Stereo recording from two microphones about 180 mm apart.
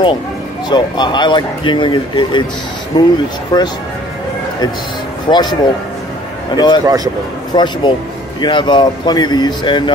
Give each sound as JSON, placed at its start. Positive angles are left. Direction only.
{"t": 0.7, "sound": "speech", "side_deg": 25}
{"t": 5.3, "sound": "speech", "side_deg": 25}